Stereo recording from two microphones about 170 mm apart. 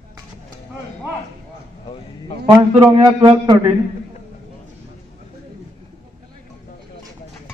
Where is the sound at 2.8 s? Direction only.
30° right (ahead or behind).